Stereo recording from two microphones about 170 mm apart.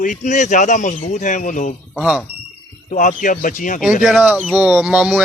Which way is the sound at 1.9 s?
Centre (ahead or behind).